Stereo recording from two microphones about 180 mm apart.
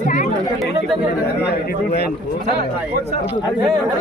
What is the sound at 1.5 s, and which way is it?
Speech, 60° left (ahead or behind).